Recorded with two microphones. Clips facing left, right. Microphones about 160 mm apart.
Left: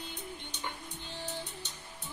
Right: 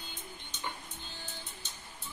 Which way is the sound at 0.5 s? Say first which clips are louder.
Right 1 dB; 70° left (ahead or behind).